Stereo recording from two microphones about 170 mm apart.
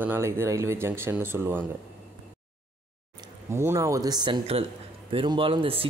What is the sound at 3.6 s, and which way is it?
A man's voice, 15° right (ahead or behind).